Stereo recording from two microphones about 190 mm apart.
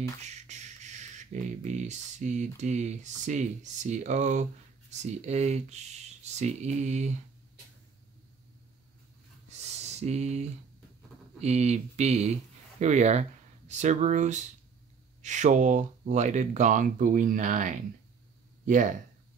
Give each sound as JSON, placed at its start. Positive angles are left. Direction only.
{"t": 0.2, "sound": "speech", "side_deg": -35}
{"t": 9.5, "sound": "a sound", "side_deg": -35}
{"t": 11.3, "sound": "speech", "side_deg": -35}